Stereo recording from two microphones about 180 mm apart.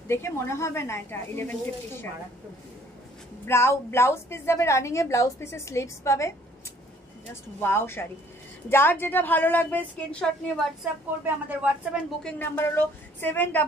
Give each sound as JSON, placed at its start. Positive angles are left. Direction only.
{"t": 0.1, "sound": "a woman's voice", "side_deg": 15}
{"t": 3.4, "sound": "a woman's voice", "side_deg": 15}
{"t": 7.6, "sound": "a woman's voice", "side_deg": 15}
{"t": 10.8, "sound": "a woman's voice", "side_deg": -10}
{"t": 12.2, "sound": "a woman's voice", "side_deg": 10}